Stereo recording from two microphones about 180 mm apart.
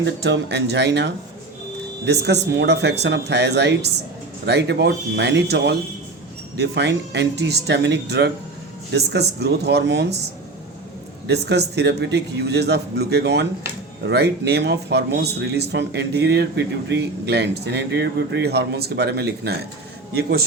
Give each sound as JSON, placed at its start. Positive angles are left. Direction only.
{"t": 0.0, "sound": "speech", "side_deg": -80}
{"t": 11.3, "sound": "speech", "side_deg": -70}